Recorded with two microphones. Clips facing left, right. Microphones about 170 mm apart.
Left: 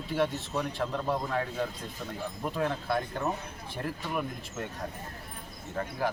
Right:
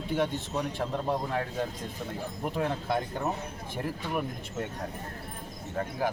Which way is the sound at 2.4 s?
15° right (ahead or behind).